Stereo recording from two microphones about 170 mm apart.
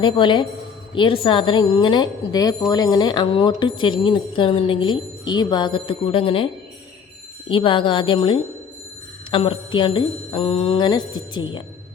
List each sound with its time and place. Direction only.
0.0 s speech: 30° left (ahead or behind)